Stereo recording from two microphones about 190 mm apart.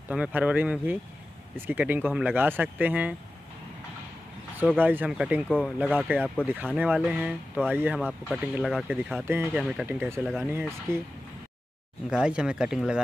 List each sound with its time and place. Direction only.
0.1 s speech: 5° right (ahead or behind)
4.8 s speech: 10° right (ahead or behind)
8.0 s speech: 5° left (ahead or behind)
10.2 s speech: centre (ahead or behind)
10.5 s speech: 10° right (ahead or behind)
12.1 s speech: 5° right (ahead or behind)